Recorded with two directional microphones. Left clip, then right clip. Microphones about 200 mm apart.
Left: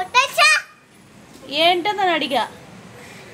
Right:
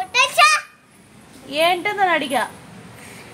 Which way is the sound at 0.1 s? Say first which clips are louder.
Right 1 dB; 20° left (ahead or behind).